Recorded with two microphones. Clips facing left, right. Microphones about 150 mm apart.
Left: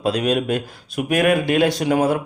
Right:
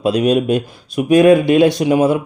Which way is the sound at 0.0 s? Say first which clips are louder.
Right 5 dB; 20° right (ahead or behind).